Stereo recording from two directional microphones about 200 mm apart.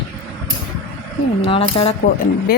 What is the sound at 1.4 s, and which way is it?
Speech, 25° left (ahead or behind).